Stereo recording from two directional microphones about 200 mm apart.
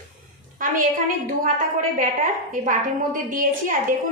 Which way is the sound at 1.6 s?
40° right (ahead or behind).